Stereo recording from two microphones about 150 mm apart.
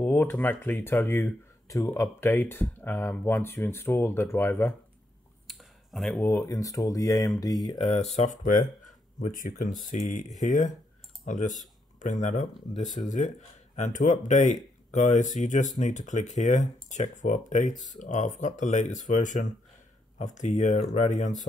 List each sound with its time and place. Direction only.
0.0 s speech: 15° left (ahead or behind)
5.5 s a sound: centre (ahead or behind)
6.2 s speech: 20° left (ahead or behind)
7.9 s speech: 45° left (ahead or behind)